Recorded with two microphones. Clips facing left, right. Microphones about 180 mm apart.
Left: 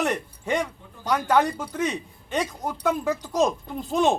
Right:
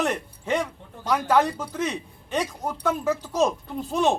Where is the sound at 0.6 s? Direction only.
15° left (ahead or behind).